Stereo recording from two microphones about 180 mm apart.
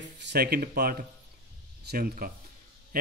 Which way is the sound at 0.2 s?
60° right (ahead or behind).